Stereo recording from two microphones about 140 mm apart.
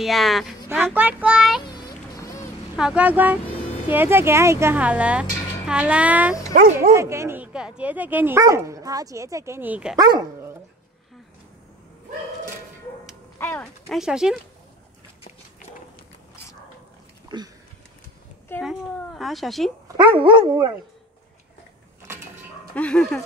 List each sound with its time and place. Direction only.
0.0 s speech: centre (ahead or behind)
0.9 s speech: 10° right (ahead or behind)
1.7 s a sound: 25° left (ahead or behind)
2.7 s speech: 5° right (ahead or behind)
6.5 s speech: 90° right
6.9 s speech: 20° right (ahead or behind)
9.9 s dog: 30° right (ahead or behind)
13.4 s speech: 15° left (ahead or behind)
13.8 s speech: 5° right (ahead or behind)
17.3 s dog: 30° right (ahead or behind)
18.6 s speech: centre (ahead or behind)
20.0 s dog: 35° right (ahead or behind)
22.8 s speech: 5° left (ahead or behind)